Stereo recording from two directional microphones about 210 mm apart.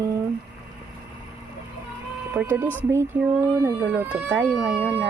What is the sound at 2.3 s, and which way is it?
Speech, 10° right (ahead or behind).